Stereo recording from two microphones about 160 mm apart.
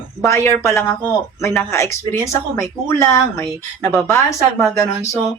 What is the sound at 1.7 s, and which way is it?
A woman's voice, 15° left (ahead or behind).